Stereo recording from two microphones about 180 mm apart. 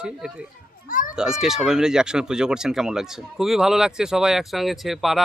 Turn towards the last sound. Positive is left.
turn(degrees=0)  # may be behind; listen again after turning